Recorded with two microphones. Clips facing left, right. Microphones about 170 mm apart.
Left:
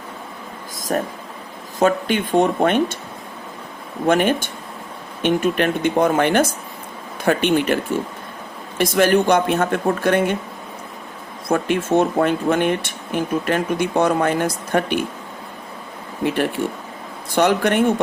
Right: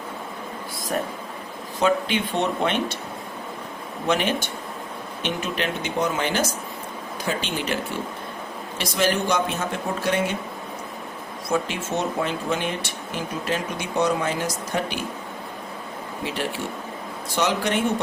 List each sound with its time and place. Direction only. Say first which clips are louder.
0.9 s speech: left 5 dB; 45° left (ahead or behind)
4.0 s speech: left 6 dB; 50° left (ahead or behind)
11.4 s speech: left 6 dB; 55° left (ahead or behind)
16.2 s speech: left 9 dB; 55° left (ahead or behind)